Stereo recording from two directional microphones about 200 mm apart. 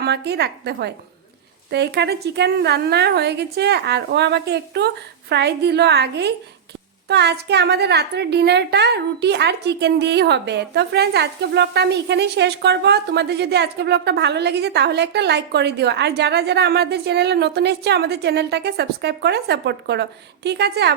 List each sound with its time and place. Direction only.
0.0 s a woman's voice: 55° right (ahead or behind)